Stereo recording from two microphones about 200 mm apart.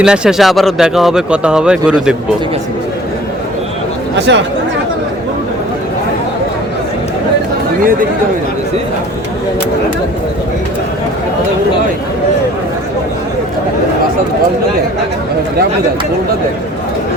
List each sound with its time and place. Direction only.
0.0 s speech: 5° right (ahead or behind)
4.3 s speech: 60° right (ahead or behind)